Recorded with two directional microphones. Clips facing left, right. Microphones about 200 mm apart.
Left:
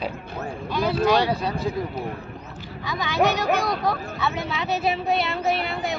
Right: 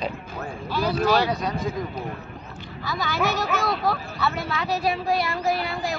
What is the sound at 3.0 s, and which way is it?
Speech, 20° left (ahead or behind).